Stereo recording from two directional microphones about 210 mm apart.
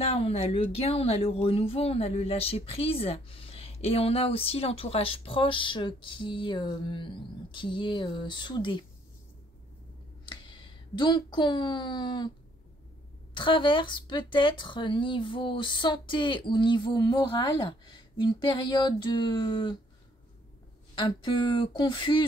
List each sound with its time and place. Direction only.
0.0 s speech: 30° left (ahead or behind)
10.5 s speech: 20° left (ahead or behind)
13.3 s speech: 25° left (ahead or behind)
20.9 s speech: 25° left (ahead or behind)